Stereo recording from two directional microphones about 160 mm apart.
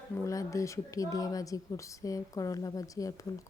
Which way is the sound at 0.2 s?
20° left (ahead or behind).